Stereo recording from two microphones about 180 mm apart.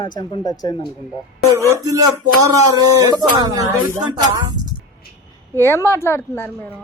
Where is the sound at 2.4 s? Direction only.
20° right (ahead or behind).